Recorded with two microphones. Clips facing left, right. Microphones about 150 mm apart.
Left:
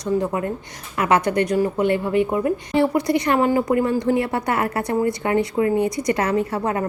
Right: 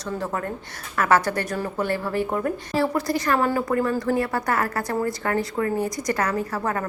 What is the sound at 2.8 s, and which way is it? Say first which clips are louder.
A woman's voice: left 4 dB; 20° left (ahead or behind).